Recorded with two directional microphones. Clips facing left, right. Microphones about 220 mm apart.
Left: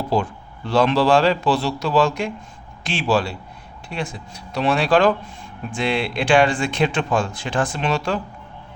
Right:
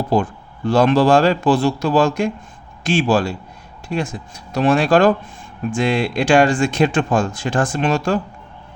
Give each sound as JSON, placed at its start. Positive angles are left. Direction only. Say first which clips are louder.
{"t": 0.1, "sound": "speech", "louder": "right 3 dB", "side_deg": -50}